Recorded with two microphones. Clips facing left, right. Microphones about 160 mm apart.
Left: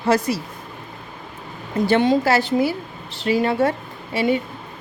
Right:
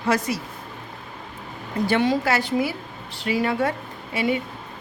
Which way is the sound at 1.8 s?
25° left (ahead or behind).